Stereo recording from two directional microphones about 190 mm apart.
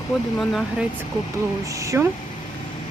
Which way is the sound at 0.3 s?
Centre (ahead or behind).